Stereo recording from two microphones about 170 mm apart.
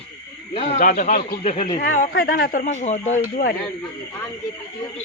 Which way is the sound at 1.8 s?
60° left (ahead or behind).